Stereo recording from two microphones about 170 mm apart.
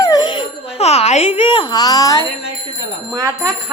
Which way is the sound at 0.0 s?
25° left (ahead or behind).